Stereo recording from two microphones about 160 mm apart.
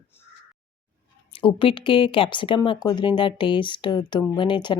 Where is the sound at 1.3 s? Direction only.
35° left (ahead or behind).